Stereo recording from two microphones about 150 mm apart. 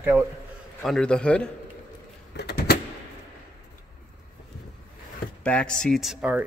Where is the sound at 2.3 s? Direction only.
90° left.